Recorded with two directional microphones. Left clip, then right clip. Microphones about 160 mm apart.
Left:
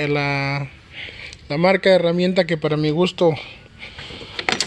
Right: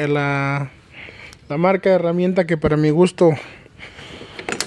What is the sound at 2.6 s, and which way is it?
Speech, 35° right (ahead or behind).